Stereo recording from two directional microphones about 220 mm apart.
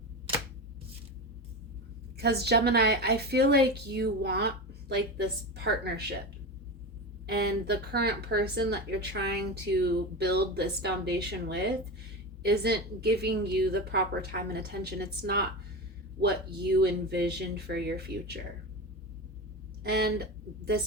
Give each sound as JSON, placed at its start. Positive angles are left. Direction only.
{"t": 2.1, "sound": "a woman's voice", "side_deg": -45}
{"t": 7.3, "sound": "a woman's voice", "side_deg": -45}
{"t": 19.8, "sound": "a woman's voice", "side_deg": -45}